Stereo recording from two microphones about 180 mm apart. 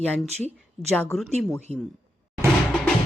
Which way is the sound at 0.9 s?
5° left (ahead or behind).